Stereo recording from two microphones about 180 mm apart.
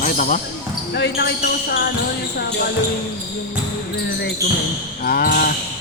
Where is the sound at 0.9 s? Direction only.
65° left (ahead or behind).